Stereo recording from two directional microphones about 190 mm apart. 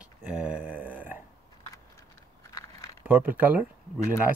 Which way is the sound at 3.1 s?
10° right (ahead or behind).